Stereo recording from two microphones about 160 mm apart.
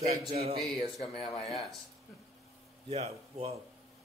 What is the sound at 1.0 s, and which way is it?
Speech, 40° left (ahead or behind).